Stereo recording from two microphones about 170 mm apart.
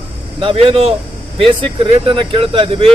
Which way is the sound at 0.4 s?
35° right (ahead or behind).